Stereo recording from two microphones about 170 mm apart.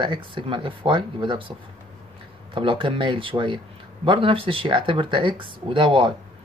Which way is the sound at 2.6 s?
30° right (ahead or behind).